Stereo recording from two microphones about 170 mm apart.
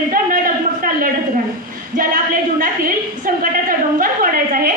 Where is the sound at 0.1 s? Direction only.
55° right (ahead or behind).